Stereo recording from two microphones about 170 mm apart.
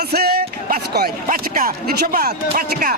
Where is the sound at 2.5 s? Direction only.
50° right (ahead or behind).